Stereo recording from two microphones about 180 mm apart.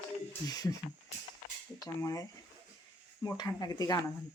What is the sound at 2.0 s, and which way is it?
Speech, 20° left (ahead or behind).